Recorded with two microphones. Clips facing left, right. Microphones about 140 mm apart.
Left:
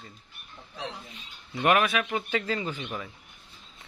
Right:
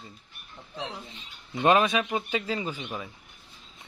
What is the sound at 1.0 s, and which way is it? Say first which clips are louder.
A man's voice: even; 25° right (ahead or behind).